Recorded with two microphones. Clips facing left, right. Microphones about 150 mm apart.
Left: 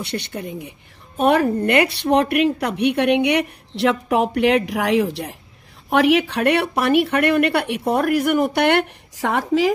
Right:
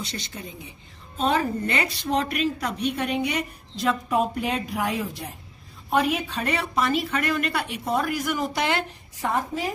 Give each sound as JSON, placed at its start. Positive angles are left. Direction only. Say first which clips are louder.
{"t": 0.0, "sound": "a woman's voice", "louder": "left 8 dB", "side_deg": 65}